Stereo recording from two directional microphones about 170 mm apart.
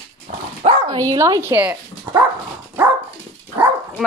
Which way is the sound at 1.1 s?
20° right (ahead or behind).